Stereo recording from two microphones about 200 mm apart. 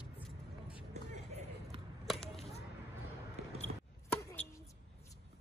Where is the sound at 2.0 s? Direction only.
Centre (ahead or behind).